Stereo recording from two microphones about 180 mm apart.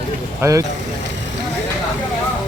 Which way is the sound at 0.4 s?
15° right (ahead or behind).